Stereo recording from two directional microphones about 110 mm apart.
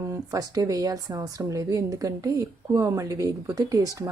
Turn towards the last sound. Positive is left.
turn(degrees=-30)  # may be behind; listen again after turning